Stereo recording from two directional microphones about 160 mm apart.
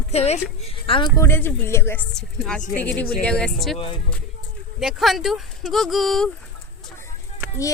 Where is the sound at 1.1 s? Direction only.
15° left (ahead or behind).